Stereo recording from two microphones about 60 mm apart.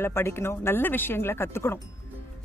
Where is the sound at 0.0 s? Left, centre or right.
Left.